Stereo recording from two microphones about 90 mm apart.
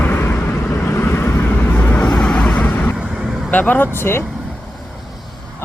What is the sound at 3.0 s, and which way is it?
Vehicle, 10° right (ahead or behind).